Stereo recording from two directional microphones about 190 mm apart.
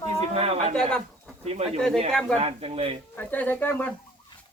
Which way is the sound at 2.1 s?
5° left (ahead or behind).